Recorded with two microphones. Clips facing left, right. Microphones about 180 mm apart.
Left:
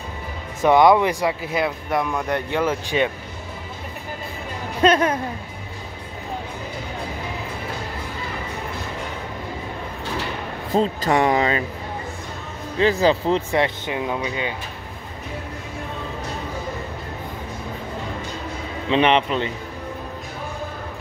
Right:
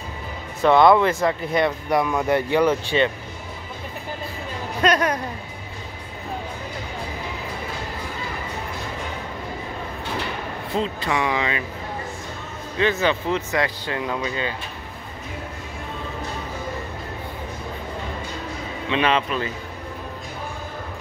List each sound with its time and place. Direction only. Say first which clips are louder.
0.6 s speech: even; 15° left (ahead or behind)
4.8 s a man's voice: left 3 dB; 25° left (ahead or behind)
10.7 s speech: left 5 dB; 40° left (ahead or behind)
12.7 s speech: left 3 dB; 30° left (ahead or behind)
13.9 s speech: right 1 dB; 15° left (ahead or behind)
18.9 s a man's voice: left 4 dB; 25° left (ahead or behind)